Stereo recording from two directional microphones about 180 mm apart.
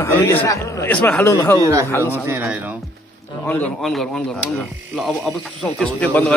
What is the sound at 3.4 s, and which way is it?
Speech, 10° left (ahead or behind).